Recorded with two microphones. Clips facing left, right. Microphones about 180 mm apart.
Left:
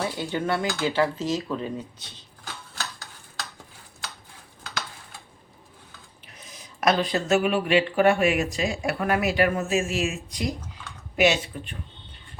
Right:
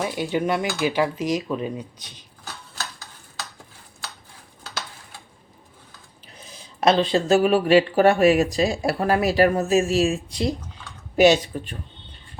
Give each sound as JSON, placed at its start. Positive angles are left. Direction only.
{"t": 0.0, "sound": "speech", "side_deg": -15}
{"t": 6.2, "sound": "speech", "side_deg": -30}